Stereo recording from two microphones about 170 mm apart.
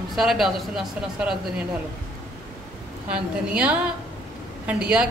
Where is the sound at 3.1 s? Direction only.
5° right (ahead or behind).